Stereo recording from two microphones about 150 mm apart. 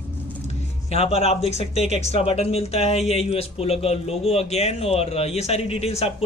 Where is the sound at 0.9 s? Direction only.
45° left (ahead or behind).